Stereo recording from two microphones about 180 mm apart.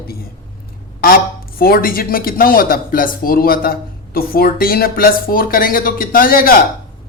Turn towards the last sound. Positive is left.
turn(degrees=50)  # may be behind; listen again after turning